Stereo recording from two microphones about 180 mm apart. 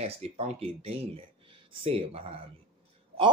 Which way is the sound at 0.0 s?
35° right (ahead or behind).